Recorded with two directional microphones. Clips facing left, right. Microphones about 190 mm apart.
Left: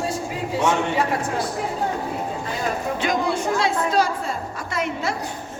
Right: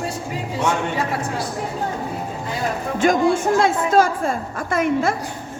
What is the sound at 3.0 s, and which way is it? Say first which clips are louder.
A woman's voice: right 9 dB; 50° right (ahead or behind).